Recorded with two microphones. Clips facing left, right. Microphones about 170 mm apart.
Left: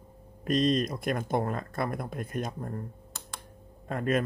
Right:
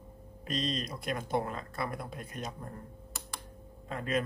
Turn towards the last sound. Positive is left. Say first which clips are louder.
# left 5 dB
turn(degrees=50)  # may be behind; listen again after turning